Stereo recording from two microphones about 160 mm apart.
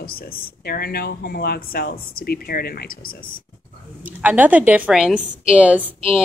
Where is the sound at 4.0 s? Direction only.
10° right (ahead or behind).